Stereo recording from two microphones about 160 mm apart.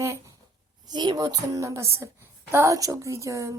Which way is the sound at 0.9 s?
25° right (ahead or behind).